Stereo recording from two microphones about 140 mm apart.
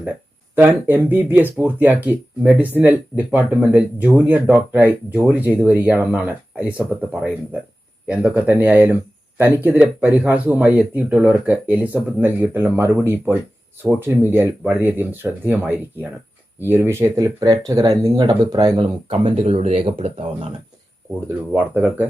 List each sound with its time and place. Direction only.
0.5 s speech: 15° right (ahead or behind); by 20.5 s 45° right (ahead or behind)
21.2 s speech: 15° right (ahead or behind)